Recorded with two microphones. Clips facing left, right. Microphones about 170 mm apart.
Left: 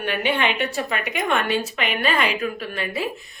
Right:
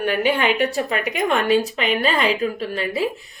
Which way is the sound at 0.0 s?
40° right (ahead or behind).